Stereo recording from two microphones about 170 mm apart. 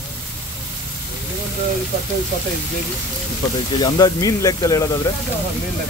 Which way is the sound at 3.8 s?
20° left (ahead or behind).